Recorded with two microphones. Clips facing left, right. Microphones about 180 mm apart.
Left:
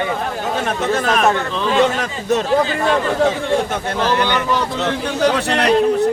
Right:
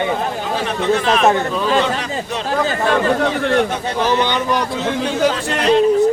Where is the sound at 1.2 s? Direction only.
20° right (ahead or behind).